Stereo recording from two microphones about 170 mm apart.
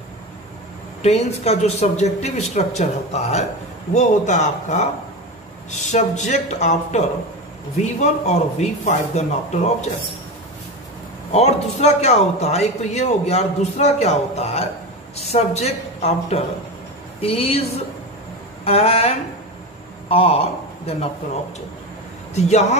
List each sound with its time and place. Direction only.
1.0 s speech: 40° left (ahead or behind)
11.3 s a man's voice: 40° left (ahead or behind)
22.3 s speech: 40° left (ahead or behind)